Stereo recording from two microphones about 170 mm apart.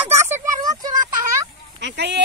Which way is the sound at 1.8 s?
90° right.